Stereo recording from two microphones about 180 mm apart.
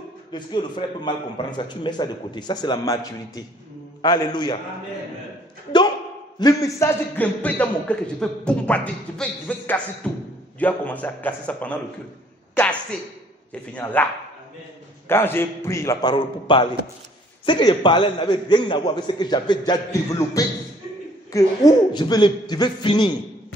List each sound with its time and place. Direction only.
0.3 s a man's voice: 25° left (ahead or behind)
6.4 s a man's voice: 20° left (ahead or behind)
13.5 s a man's voice: 10° left (ahead or behind)
15.0 s a man's voice: 10° left (ahead or behind)